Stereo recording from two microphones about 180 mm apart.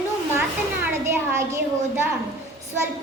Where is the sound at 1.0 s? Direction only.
15° right (ahead or behind).